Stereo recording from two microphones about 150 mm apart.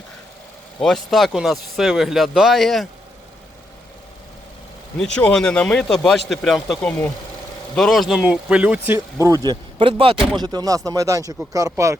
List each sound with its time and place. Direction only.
0.8 s speech: centre (ahead or behind)
5.1 s speech: 5° left (ahead or behind); by 11.9 s 20° right (ahead or behind)